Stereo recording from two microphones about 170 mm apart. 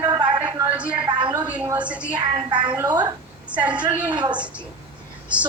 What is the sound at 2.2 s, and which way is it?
Speech, 25° right (ahead or behind).